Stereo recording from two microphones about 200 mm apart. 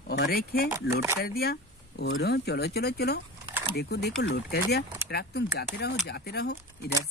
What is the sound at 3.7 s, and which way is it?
Speech, 55° left (ahead or behind).